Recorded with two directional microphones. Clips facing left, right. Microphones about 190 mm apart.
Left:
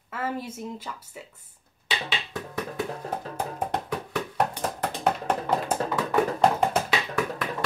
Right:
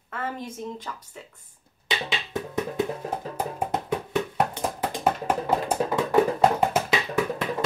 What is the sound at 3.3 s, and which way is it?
Music, 10° right (ahead or behind).